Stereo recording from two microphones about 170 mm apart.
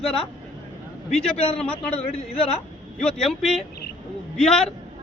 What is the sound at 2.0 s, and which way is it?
Speech, 40° left (ahead or behind).